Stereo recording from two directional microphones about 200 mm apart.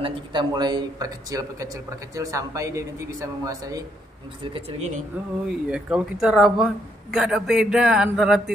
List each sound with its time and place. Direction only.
0.0 s a man's voice: 20° right (ahead or behind)
4.6 s speech: 30° right (ahead or behind)
5.7 s speech: 5° right (ahead or behind)